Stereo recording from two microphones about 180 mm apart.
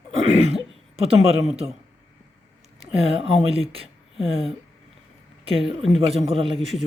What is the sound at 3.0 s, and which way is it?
Speech, 30° right (ahead or behind).